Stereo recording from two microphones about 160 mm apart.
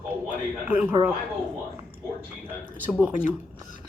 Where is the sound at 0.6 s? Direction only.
10° right (ahead or behind).